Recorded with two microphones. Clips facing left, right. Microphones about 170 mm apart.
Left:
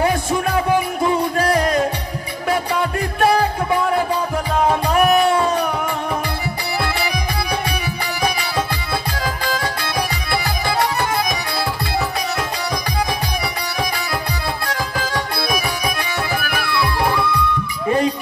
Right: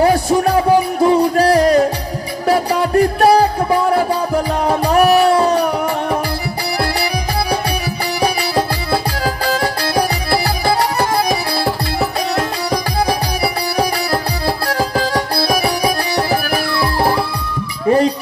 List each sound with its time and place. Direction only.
0.0 s music: 35° right (ahead or behind)
8.2 s music: 35° right (ahead or behind)
13.0 s music: 35° right (ahead or behind)